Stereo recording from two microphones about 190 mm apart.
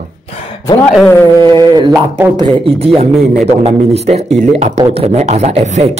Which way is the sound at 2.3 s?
25° right (ahead or behind).